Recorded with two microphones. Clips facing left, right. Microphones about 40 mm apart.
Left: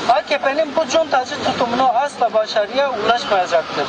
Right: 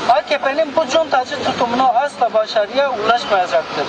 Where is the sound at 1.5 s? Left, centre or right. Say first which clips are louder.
Even; right.